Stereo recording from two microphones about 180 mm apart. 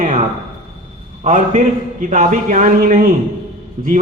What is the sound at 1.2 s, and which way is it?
Speech, 45° right (ahead or behind).